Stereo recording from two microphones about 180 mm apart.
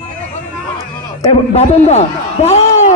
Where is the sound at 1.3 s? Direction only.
35° left (ahead or behind).